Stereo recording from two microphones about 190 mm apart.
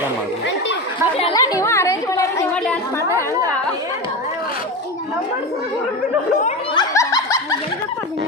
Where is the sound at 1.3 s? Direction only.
15° left (ahead or behind).